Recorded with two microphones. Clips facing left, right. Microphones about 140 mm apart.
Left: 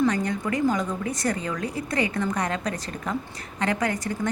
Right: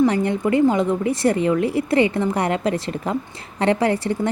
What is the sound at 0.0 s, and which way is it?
Speech, 25° right (ahead or behind).